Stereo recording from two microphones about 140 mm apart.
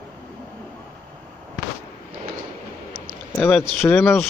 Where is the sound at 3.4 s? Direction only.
10° left (ahead or behind).